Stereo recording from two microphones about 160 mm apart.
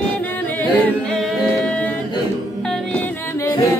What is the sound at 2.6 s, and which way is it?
Music, 5° left (ahead or behind).